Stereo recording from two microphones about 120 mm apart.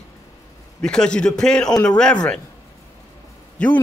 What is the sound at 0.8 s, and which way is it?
A man's voice, 5° left (ahead or behind).